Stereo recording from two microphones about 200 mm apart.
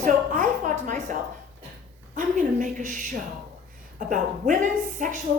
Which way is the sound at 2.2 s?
40° right (ahead or behind).